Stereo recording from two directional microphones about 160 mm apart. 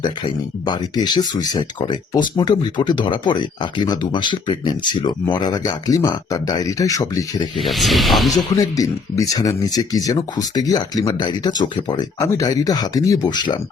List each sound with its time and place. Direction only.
0.0 s speech: 30° left (ahead or behind)
7.6 s speech: centre (ahead or behind)
8.5 s speech: 20° left (ahead or behind)